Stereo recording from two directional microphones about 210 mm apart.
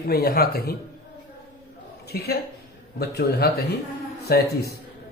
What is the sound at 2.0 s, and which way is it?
A woman's voice, 50° left (ahead or behind).